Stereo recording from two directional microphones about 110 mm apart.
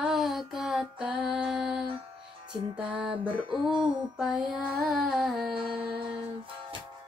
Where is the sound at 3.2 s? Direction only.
50° right (ahead or behind).